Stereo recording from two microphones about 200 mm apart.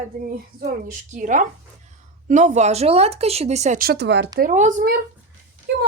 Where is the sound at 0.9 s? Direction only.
40° right (ahead or behind); by 4.3 s 60° right (ahead or behind).